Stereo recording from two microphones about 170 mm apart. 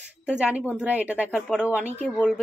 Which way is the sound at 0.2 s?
5° right (ahead or behind).